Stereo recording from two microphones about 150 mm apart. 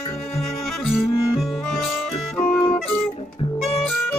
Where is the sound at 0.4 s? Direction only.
Centre (ahead or behind).